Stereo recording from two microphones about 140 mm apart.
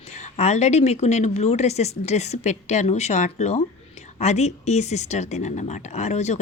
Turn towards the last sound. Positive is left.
turn(degrees=55)  # may be behind; listen again after turning